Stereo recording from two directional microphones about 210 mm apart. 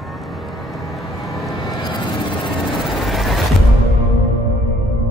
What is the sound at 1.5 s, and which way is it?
Vehicle, 20° left (ahead or behind).